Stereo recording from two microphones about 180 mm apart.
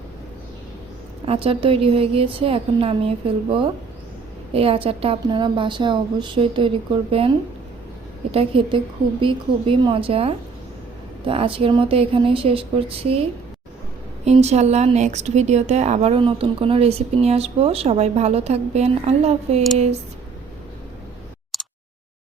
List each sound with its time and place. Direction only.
1.2 s a woman's voice: 30° right (ahead or behind)
8.3 s a woman's voice: 30° right (ahead or behind)
14.3 s a woman's voice: 35° right (ahead or behind)
21.5 s a sound: centre (ahead or behind)